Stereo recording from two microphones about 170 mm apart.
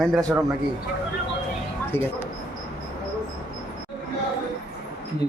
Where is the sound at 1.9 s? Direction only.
15° left (ahead or behind).